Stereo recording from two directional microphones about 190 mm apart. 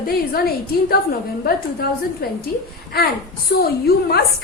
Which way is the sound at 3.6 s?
55° left (ahead or behind).